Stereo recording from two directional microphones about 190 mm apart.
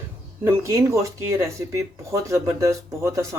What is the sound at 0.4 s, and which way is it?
Speech, 15° right (ahead or behind).